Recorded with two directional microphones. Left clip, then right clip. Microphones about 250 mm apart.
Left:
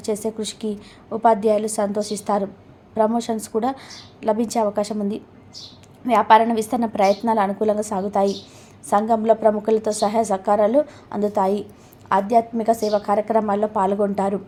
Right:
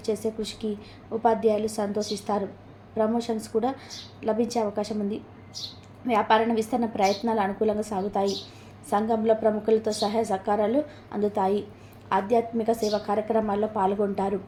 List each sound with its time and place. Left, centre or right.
0.0 s a woman's voice: left